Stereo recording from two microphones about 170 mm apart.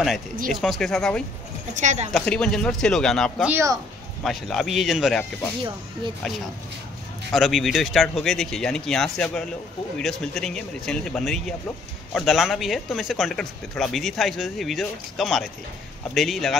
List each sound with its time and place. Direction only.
0.5 s speech: centre (ahead or behind)
1.7 s a woman's voice: 45° right (ahead or behind)
2.1 s speech: 5° left (ahead or behind)
3.4 s speech: 15° right (ahead or behind)
4.2 s speech: centre (ahead or behind)
7.3 s speech: centre (ahead or behind)